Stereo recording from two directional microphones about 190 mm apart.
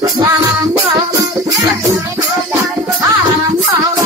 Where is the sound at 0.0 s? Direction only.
20° right (ahead or behind).